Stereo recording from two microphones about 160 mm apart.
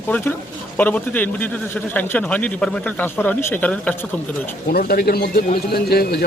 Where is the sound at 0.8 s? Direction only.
10° left (ahead or behind).